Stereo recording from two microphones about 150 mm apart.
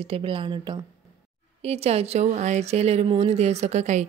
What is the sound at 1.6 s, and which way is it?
Speech, 45° right (ahead or behind).